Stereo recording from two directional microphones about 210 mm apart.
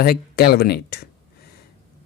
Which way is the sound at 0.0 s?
45° left (ahead or behind).